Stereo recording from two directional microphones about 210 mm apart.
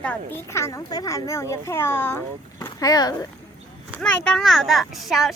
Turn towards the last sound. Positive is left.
turn(degrees=0)  # may be behind; listen again after turning